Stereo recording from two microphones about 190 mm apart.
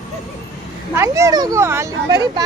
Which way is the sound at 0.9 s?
15° right (ahead or behind).